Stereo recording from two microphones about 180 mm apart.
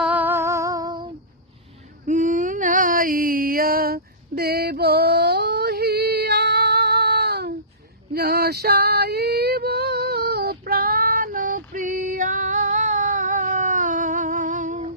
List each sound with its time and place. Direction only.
0.0 s music: 10° right (ahead or behind)
2.0 s a sound: 45° right (ahead or behind); by 7.5 s 65° right (ahead or behind)
8.1 s female singing: 60° right (ahead or behind); by 14.9 s 40° right (ahead or behind)